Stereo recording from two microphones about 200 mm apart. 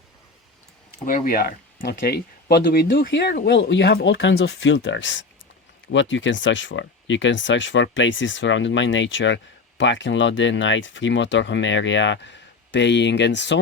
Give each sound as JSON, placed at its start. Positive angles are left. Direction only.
{"t": 1.0, "sound": "speech", "side_deg": 45}